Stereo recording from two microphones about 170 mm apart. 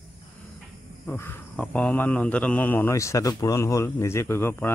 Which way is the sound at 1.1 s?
15° left (ahead or behind).